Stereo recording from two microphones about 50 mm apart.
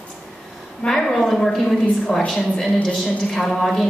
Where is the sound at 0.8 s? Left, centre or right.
Centre.